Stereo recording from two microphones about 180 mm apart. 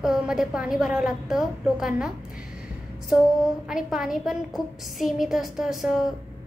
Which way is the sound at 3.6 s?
5° right (ahead or behind).